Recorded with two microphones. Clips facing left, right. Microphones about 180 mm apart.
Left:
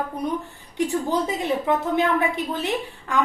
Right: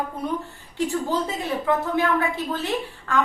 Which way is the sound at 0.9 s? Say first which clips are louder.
Left 2 dB; 20° left (ahead or behind).